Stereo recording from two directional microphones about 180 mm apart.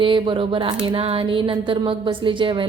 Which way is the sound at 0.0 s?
30° right (ahead or behind).